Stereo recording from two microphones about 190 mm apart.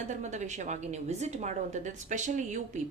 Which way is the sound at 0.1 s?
40° right (ahead or behind).